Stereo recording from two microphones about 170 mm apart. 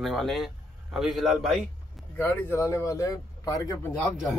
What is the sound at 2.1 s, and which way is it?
Speech, 15° left (ahead or behind).